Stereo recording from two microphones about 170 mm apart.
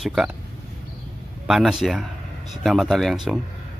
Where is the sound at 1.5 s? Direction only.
Centre (ahead or behind).